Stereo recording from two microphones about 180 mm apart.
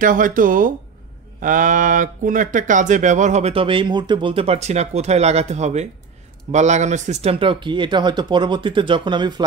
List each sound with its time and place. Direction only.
0.0 s speech: 50° right (ahead or behind); by 9.3 s 25° right (ahead or behind)